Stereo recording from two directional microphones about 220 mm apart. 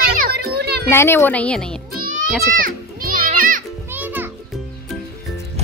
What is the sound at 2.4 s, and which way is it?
Children playing, 40° right (ahead or behind).